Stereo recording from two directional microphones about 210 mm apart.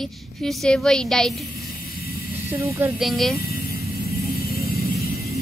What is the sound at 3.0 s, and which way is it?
Speech, centre (ahead or behind).